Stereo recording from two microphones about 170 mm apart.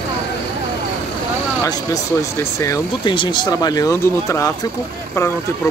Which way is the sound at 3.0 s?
30° left (ahead or behind).